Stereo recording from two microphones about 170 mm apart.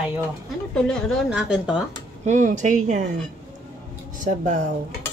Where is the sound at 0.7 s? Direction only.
5° left (ahead or behind).